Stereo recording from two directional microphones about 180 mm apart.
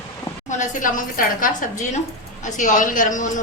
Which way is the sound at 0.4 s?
45° left (ahead or behind).